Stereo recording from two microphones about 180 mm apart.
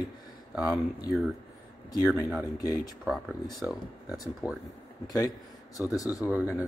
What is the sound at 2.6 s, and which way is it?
Speech, 20° left (ahead or behind).